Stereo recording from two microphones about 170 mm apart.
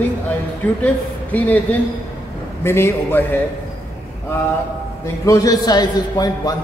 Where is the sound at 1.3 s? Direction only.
10° left (ahead or behind).